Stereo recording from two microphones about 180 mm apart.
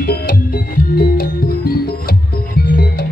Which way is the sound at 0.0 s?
55° left (ahead or behind).